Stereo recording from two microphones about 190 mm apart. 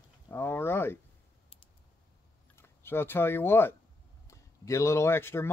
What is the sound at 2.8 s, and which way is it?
Speech, 10° left (ahead or behind).